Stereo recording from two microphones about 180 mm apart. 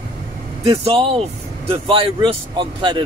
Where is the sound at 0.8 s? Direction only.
30° right (ahead or behind).